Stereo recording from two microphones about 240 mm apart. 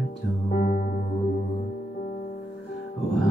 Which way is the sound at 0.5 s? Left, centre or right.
Left.